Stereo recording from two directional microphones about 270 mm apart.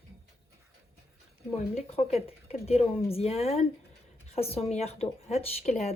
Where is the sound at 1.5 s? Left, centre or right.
Left.